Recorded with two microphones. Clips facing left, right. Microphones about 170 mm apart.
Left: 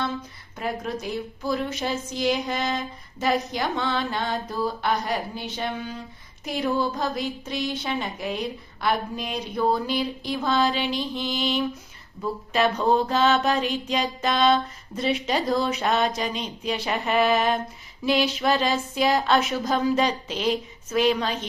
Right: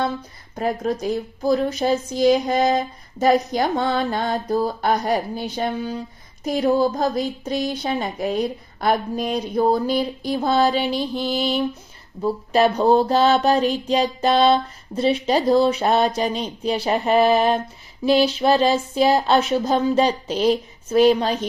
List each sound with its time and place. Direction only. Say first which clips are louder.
0.5 s speech: right 6 dB; 40° right (ahead or behind)